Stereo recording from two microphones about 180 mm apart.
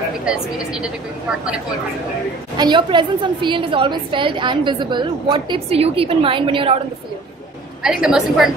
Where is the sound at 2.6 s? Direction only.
25° right (ahead or behind).